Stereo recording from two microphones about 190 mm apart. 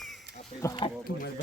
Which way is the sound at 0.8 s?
30° left (ahead or behind).